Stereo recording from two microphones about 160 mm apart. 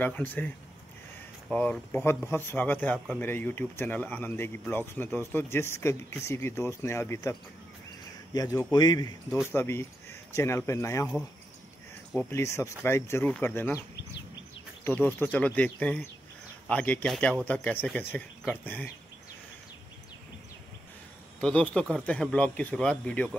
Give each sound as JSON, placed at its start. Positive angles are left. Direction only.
{"t": 0.0, "sound": "speech", "side_deg": 10}
{"t": 1.5, "sound": "speech", "side_deg": 10}
{"t": 9.5, "sound": "speech", "side_deg": 15}
{"t": 12.3, "sound": "speech", "side_deg": 20}
{"t": 14.9, "sound": "speech", "side_deg": 10}
{"t": 21.4, "sound": "a man's voice", "side_deg": 5}